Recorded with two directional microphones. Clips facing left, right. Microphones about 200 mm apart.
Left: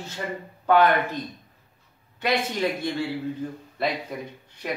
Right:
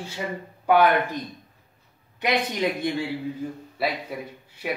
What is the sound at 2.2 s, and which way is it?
Speech, 15° right (ahead or behind).